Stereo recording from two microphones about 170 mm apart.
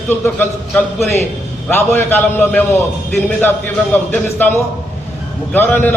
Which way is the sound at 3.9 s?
10° left (ahead or behind).